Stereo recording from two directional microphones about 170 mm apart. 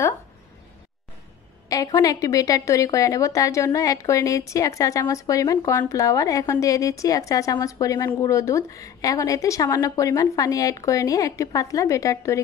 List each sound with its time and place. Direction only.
1.7 s a woman's voice: 20° left (ahead or behind)